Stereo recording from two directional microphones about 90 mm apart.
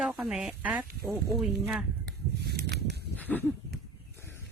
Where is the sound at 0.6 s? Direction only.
15° right (ahead or behind).